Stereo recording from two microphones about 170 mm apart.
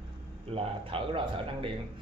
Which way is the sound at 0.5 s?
30° right (ahead or behind).